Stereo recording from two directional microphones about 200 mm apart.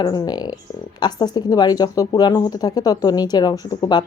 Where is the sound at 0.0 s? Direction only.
20° left (ahead or behind).